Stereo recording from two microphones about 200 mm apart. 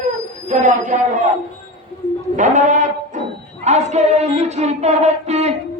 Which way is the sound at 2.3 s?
40° right (ahead or behind).